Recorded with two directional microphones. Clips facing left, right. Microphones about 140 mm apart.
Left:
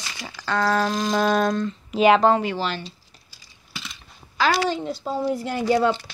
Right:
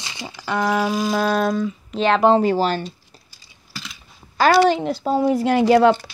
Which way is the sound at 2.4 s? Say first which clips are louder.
Right 8 dB; 40° right (ahead or behind).